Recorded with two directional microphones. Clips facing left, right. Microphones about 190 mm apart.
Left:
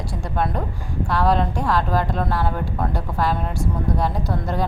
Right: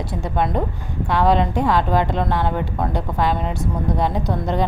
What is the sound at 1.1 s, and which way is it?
A woman's voice, centre (ahead or behind).